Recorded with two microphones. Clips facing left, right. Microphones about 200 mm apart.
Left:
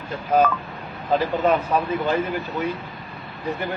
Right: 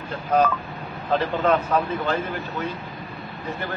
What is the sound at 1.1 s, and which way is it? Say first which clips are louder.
A man's voice: left 1 dB; 10° left (ahead or behind).